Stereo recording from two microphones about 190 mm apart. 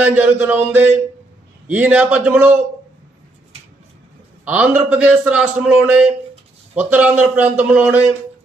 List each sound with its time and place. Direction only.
0.0 s a man's voice: 10° right (ahead or behind)
4.5 s a man's voice: 5° right (ahead or behind)